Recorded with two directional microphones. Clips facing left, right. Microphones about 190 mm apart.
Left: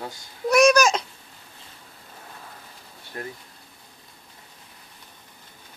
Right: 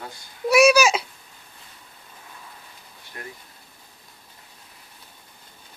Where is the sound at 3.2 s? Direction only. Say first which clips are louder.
Left 5 dB; 35° left (ahead or behind).